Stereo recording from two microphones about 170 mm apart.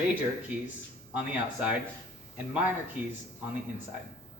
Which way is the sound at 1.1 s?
10° right (ahead or behind).